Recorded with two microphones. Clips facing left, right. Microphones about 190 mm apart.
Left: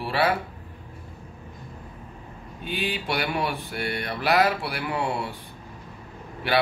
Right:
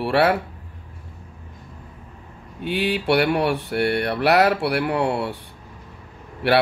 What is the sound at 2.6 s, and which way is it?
Speech, 70° right (ahead or behind).